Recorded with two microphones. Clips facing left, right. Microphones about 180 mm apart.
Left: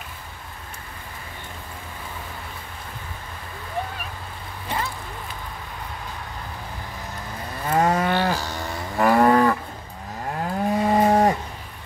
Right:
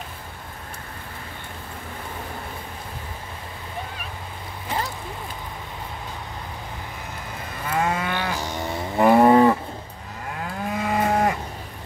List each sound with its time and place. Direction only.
7.6 s cattle: 35° left (ahead or behind)
8.4 s cattle: 20° right (ahead or behind)
10.4 s moo: 35° left (ahead or behind)